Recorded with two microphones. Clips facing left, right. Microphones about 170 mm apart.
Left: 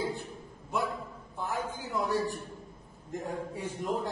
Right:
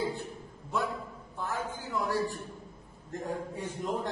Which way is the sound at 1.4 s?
20° left (ahead or behind).